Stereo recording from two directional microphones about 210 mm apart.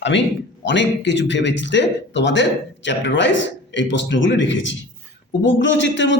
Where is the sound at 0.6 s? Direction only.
60° left (ahead or behind).